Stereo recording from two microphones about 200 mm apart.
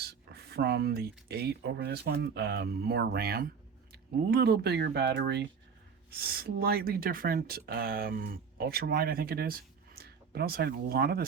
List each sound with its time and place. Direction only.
0.0 s speech: 55° right (ahead or behind)